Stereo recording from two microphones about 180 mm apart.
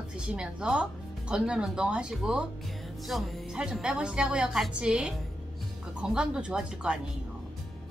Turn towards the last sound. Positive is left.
turn(degrees=-5)  # may be behind; listen again after turning